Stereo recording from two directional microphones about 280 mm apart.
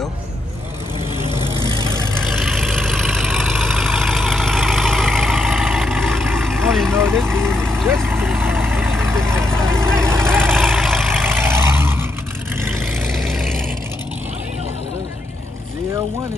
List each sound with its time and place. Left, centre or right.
1.3 s vehicle: centre
1.6 s vehicle: centre
2.1 s vehicle: centre
6.9 s vehicle: centre
7.4 s vehicle: centre